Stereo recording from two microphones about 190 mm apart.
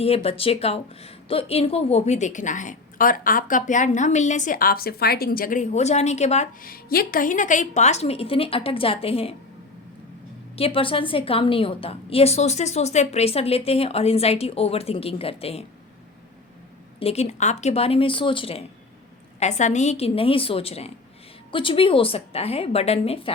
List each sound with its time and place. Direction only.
0.0 s a woman's voice: 30° left (ahead or behind)
10.5 s a woman's voice: 30° left (ahead or behind)
17.0 s a woman's voice: 35° left (ahead or behind)